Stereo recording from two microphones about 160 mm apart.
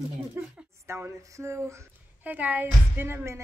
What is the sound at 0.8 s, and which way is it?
Speech, 15° right (ahead or behind).